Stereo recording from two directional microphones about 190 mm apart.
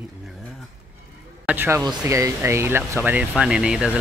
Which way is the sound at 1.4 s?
10° right (ahead or behind).